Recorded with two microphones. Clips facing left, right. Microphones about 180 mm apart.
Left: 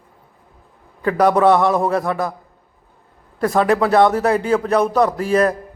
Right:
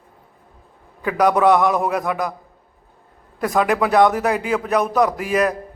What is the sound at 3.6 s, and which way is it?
Speech, 15° right (ahead or behind).